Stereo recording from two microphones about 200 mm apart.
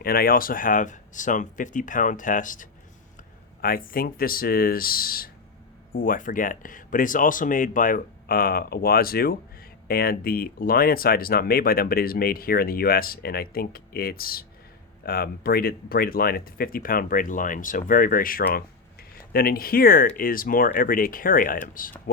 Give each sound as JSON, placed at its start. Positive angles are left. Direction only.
{"t": 0.0, "sound": "speech", "side_deg": 50}